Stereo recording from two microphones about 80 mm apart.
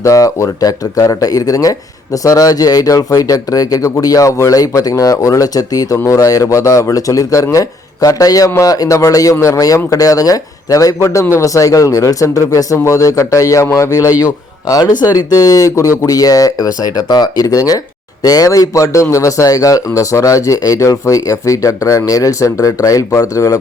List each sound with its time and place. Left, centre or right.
0.0 s a man's voice: left